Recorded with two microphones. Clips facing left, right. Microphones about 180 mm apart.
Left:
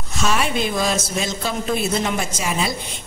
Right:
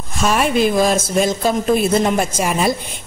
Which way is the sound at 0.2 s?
50° right (ahead or behind).